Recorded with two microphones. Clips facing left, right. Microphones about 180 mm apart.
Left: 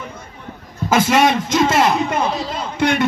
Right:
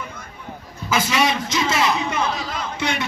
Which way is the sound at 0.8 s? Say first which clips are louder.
Left 6 dB; 50° left (ahead or behind).